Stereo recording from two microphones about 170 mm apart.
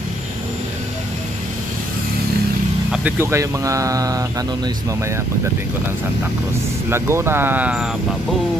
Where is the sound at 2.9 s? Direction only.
10° right (ahead or behind).